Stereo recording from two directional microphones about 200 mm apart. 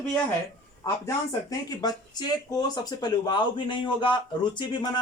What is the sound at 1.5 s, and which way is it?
Speech, 20° left (ahead or behind).